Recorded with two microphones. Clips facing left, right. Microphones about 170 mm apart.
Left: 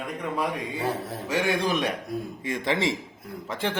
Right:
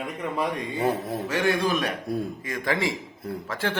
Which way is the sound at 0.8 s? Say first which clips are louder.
Right 6 dB; 15° right (ahead or behind).